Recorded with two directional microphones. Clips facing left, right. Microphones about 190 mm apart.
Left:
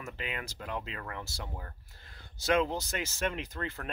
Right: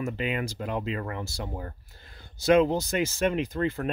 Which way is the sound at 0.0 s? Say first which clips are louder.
Right 10 dB; 20° right (ahead or behind).